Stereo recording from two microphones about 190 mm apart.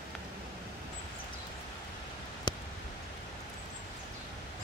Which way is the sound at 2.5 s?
25° left (ahead or behind).